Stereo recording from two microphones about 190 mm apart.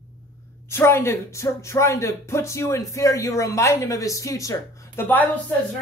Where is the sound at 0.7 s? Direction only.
15° left (ahead or behind).